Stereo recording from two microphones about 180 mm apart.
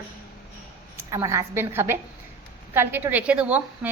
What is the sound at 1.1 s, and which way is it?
A woman's voice, 15° right (ahead or behind).